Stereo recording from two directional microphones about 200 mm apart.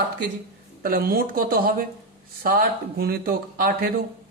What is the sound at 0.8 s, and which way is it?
Speech, 45° right (ahead or behind).